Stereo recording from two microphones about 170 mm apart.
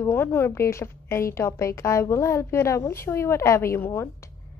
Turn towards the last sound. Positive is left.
turn(degrees=15)  # may be behind; listen again after turning